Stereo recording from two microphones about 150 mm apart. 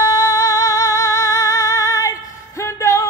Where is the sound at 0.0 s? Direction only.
25° left (ahead or behind).